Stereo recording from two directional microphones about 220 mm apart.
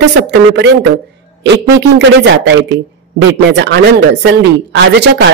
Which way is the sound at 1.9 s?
55° right (ahead or behind).